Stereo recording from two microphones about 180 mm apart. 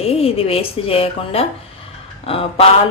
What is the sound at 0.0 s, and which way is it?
Speech, 35° left (ahead or behind).